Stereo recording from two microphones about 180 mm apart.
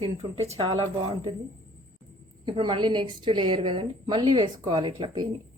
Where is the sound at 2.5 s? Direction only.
30° right (ahead or behind).